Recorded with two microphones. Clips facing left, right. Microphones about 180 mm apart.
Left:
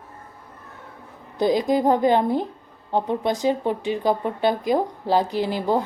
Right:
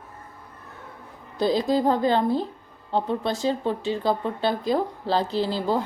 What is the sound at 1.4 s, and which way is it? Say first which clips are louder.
A woman's voice: left 2 dB; 15° left (ahead or behind).